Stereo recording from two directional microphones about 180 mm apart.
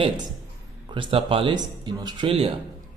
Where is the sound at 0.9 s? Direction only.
30° right (ahead or behind).